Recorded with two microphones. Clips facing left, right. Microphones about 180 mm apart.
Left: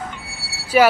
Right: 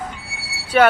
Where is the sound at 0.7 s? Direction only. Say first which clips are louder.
Even; 5° left (ahead or behind).